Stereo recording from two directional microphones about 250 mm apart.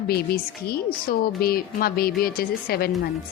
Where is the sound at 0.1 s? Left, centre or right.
Left.